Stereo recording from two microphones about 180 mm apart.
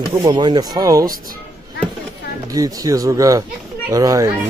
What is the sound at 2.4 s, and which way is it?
Speech, 20° right (ahead or behind).